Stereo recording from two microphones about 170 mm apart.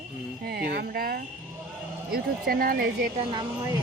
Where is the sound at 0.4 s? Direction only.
65° right (ahead or behind).